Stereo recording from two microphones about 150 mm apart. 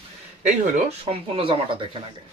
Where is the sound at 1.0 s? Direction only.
35° right (ahead or behind).